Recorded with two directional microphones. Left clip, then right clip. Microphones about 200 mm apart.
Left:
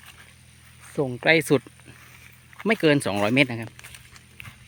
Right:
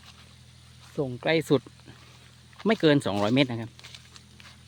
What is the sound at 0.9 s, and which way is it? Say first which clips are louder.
Speech: left 6 dB; 20° left (ahead or behind).